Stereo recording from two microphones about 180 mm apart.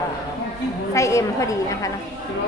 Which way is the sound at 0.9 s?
15° left (ahead or behind).